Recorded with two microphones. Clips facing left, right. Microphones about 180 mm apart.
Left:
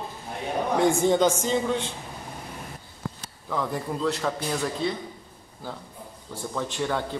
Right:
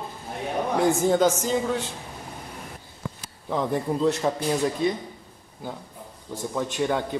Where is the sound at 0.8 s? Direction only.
5° right (ahead or behind).